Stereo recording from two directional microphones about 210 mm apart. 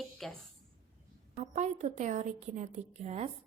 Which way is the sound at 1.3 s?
35° right (ahead or behind).